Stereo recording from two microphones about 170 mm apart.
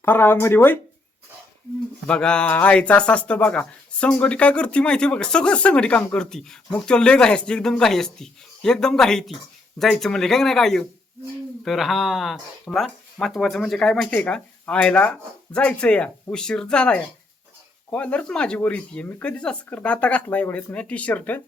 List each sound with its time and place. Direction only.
0.0 s speech: 10° left (ahead or behind)
2.0 s speech: 5° left (ahead or behind)